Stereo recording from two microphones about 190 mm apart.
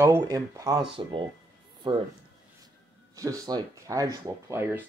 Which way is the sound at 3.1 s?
20° right (ahead or behind).